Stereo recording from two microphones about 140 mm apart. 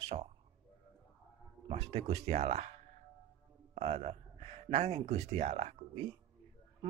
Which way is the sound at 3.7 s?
50° right (ahead or behind).